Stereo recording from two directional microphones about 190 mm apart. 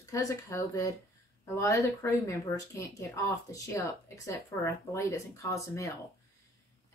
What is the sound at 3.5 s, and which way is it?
Speech, 15° left (ahead or behind).